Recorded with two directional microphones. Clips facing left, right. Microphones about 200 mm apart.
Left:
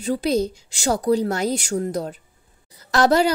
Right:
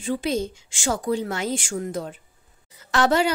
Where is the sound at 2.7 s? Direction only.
35° left (ahead or behind).